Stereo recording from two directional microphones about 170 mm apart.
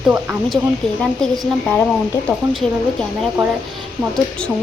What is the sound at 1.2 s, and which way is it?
Speech, centre (ahead or behind).